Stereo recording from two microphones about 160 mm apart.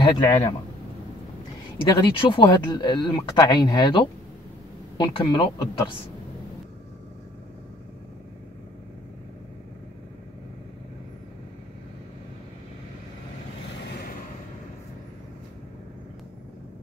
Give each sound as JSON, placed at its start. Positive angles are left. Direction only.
{"t": 0.1, "sound": "speech", "side_deg": 25}
{"t": 1.8, "sound": "speech", "side_deg": 30}